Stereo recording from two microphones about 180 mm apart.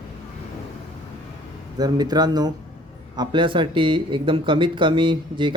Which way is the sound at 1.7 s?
20° right (ahead or behind).